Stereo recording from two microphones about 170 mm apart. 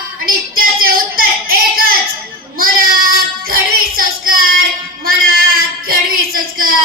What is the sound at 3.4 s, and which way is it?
Music, 55° right (ahead or behind).